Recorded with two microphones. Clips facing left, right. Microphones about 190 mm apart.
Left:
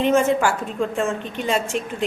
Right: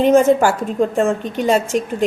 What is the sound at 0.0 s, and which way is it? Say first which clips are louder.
A woman's voice: right 6 dB; 40° right (ahead or behind).